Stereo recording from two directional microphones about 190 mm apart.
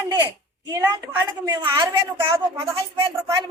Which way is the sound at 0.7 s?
15° right (ahead or behind).